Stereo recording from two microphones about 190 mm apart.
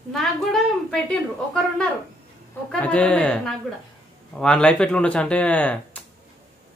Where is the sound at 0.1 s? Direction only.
Centre (ahead or behind).